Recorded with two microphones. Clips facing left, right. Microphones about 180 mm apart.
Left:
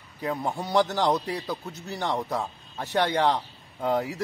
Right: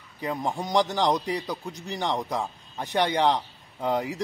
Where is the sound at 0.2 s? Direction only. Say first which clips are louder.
Even; 10° right (ahead or behind).